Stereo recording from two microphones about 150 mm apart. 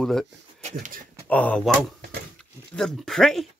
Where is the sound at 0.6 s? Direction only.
55° right (ahead or behind).